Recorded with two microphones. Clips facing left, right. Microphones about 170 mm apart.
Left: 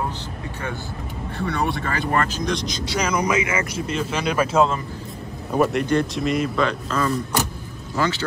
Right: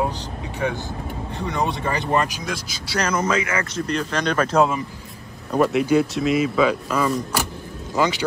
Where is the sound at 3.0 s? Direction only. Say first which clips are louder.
Even; 15° left (ahead or behind).